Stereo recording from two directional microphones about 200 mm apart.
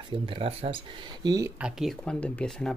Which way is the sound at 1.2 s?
15° right (ahead or behind).